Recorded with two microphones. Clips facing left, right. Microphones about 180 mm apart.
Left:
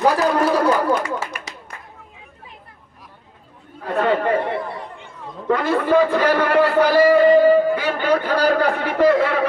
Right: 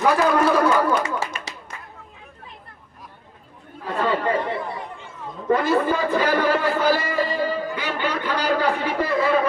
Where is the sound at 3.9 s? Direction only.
65° left (ahead or behind).